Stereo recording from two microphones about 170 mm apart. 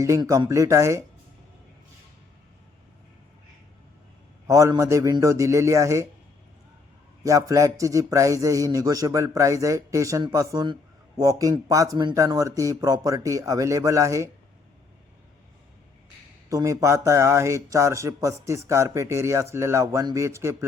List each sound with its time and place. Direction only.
0.0 s a man's voice: 20° right (ahead or behind)
4.4 s speech: 20° right (ahead or behind)
7.2 s a man's voice: 20° right (ahead or behind)
16.5 s speech: 20° right (ahead or behind)